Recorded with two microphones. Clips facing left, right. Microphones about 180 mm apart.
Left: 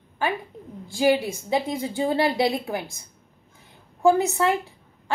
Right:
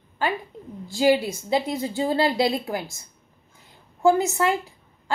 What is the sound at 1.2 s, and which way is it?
A woman's voice, 15° left (ahead or behind).